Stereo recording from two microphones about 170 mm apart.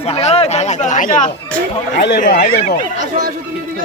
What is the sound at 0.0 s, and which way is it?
Speech, 40° left (ahead or behind).